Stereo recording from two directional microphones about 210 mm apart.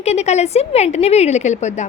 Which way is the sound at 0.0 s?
30° left (ahead or behind).